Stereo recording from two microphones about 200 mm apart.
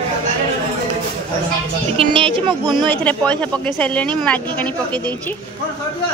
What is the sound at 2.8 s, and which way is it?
Speech, 5° left (ahead or behind).